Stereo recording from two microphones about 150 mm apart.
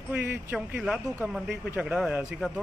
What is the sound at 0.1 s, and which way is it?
A man's voice, 10° right (ahead or behind).